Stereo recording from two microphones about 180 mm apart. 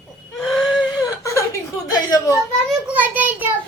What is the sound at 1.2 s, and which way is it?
Chuckle, 15° left (ahead or behind).